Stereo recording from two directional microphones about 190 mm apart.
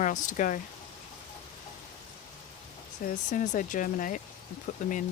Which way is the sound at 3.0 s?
40° left (ahead or behind).